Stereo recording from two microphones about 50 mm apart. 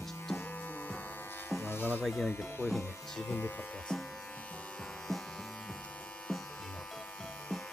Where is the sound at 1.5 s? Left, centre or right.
Left.